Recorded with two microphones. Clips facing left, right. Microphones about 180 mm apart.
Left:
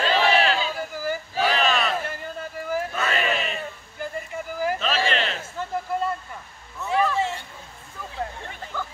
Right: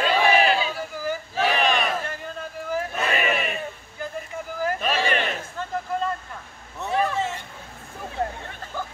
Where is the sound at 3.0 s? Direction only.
15° right (ahead or behind).